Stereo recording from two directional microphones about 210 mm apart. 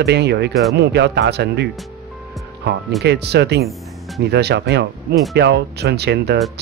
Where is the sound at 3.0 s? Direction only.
50° right (ahead or behind).